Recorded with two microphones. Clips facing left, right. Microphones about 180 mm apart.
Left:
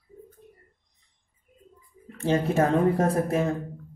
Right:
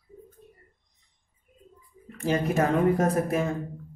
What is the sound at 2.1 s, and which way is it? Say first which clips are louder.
Speech: left 2 dB; 30° left (ahead or behind).